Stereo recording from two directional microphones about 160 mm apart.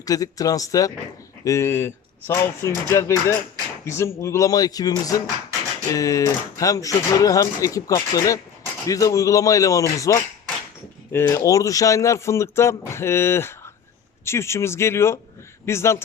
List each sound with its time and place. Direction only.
0.0 s speech: 20° left (ahead or behind)